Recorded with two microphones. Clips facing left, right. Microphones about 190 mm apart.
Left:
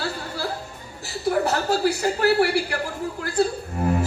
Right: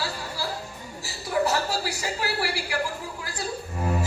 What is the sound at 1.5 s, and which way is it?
Speech, 55° left (ahead or behind).